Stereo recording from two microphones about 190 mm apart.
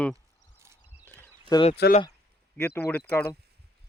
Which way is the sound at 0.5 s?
15° right (ahead or behind).